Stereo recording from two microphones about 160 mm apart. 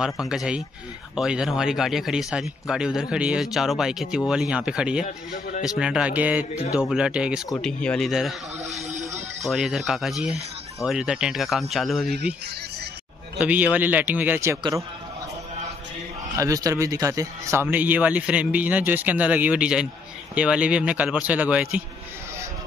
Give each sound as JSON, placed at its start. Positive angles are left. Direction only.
{"t": 0.0, "sound": "speech", "side_deg": -5}
{"t": 7.5, "sound": "speech", "side_deg": 5}
{"t": 8.6, "sound": "a sound", "side_deg": -45}
{"t": 9.4, "sound": "speech", "side_deg": 0}
{"t": 13.4, "sound": "a man's voice", "side_deg": -10}
{"t": 16.3, "sound": "speech", "side_deg": -20}